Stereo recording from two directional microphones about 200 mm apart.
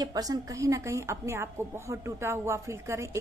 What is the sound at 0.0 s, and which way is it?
A woman's voice, 20° right (ahead or behind).